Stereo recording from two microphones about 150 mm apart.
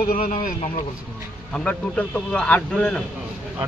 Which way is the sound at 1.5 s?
10° left (ahead or behind).